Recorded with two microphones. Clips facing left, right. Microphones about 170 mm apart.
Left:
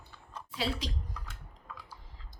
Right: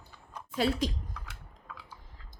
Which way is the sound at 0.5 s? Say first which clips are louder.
Right 6 dB; 50° right (ahead or behind).